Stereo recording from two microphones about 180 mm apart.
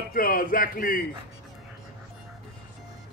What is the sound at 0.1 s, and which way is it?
Speech, 50° left (ahead or behind).